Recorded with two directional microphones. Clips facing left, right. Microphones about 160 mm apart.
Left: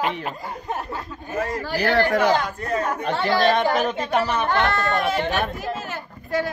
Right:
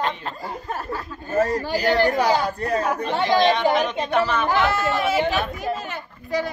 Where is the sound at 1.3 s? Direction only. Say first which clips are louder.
Right 5 dB; 40° right (ahead or behind).